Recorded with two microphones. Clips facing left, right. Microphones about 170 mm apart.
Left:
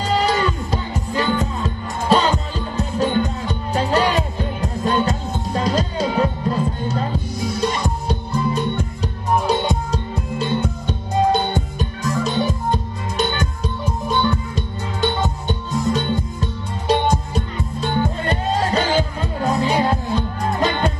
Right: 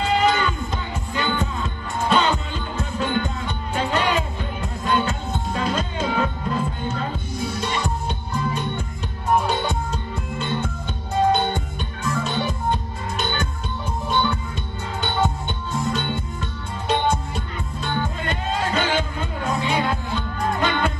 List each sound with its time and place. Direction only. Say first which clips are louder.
0.0 s music: left 1 dB; 35° left (ahead or behind)